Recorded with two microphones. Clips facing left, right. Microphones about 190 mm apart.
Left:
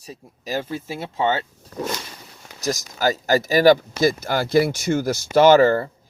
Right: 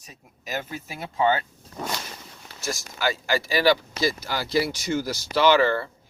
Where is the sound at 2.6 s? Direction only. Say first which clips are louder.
Left 6 dB; 40° left (ahead or behind).